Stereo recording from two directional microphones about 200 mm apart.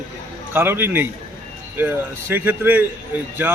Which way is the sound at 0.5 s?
10° right (ahead or behind).